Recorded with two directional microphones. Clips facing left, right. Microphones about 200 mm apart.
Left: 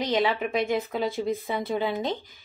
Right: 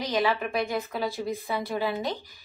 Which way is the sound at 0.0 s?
20° left (ahead or behind).